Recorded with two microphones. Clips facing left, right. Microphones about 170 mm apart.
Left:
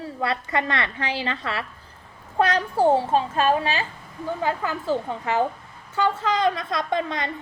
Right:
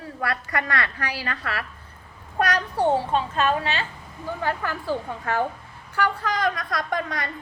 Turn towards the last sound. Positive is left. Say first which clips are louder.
# left 2 dB
turn(degrees=25)  # may be behind; listen again after turning